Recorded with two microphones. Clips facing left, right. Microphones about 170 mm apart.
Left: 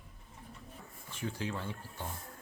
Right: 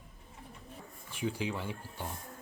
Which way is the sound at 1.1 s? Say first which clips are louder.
Right 3 dB; 15° right (ahead or behind).